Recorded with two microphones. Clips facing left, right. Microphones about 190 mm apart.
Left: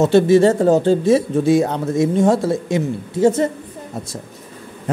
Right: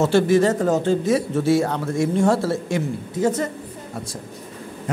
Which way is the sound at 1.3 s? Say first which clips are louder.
Left 4 dB; 15° left (ahead or behind).